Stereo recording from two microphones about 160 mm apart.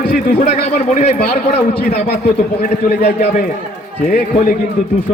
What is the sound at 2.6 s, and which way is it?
Speech, 60° left (ahead or behind).